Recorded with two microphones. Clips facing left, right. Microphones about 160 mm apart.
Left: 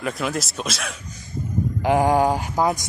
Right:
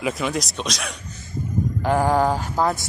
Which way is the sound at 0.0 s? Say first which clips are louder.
Right 1 dB; centre (ahead or behind).